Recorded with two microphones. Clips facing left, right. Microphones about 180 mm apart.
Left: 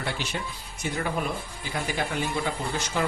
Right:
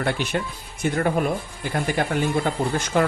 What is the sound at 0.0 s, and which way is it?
Speech, 55° right (ahead or behind).